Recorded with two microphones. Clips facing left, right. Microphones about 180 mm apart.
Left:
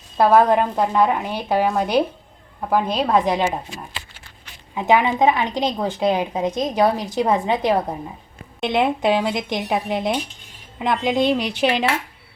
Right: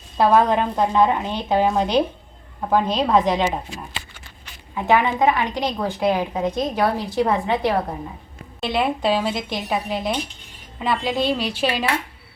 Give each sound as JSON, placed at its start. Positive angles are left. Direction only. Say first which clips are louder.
{"t": 0.2, "sound": "a woman's voice", "louder": "left 2 dB", "side_deg": 10}
{"t": 4.7, "sound": "a woman's voice", "louder": "left 1 dB", "side_deg": 15}